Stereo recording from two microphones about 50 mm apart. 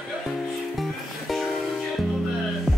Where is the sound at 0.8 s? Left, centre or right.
Centre.